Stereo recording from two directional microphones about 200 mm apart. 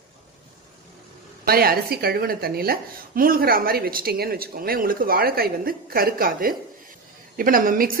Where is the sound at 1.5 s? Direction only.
50° right (ahead or behind).